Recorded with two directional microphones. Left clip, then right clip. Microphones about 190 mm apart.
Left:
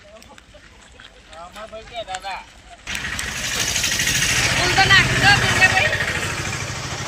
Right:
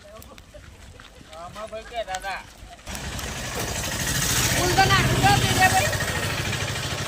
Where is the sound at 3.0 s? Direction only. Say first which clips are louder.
Left 7 dB; 40° right (ahead or behind).